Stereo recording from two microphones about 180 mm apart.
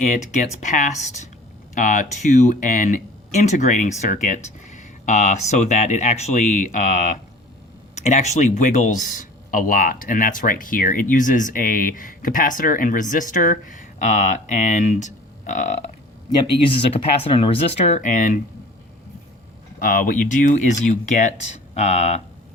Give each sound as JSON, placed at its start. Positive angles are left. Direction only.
{"t": 0.6, "sound": "speech", "side_deg": 40}
{"t": 16.4, "sound": "speech", "side_deg": 30}
{"t": 19.8, "sound": "speech", "side_deg": 50}